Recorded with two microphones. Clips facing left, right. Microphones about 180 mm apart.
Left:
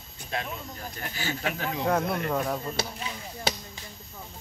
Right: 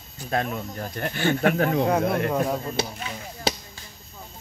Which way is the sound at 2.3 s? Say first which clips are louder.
Right 4 dB; 10° right (ahead or behind).